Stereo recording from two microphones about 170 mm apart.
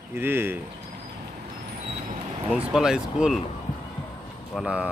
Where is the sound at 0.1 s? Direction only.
15° right (ahead or behind).